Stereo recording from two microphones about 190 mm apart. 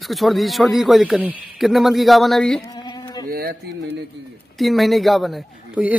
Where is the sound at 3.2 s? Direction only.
55° right (ahead or behind).